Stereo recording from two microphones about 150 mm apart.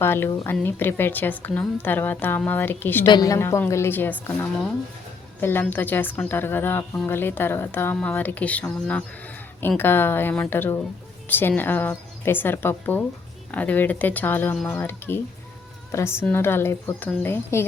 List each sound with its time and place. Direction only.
0.0 s a woman's voice: 15° left (ahead or behind)
3.1 s a woman's voice: 25° left (ahead or behind)